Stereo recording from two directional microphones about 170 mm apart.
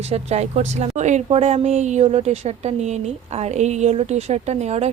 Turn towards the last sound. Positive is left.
turn(degrees=-40)  # may be behind; listen again after turning